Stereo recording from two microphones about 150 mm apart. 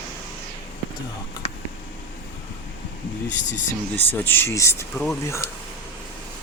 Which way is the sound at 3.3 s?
55° left (ahead or behind).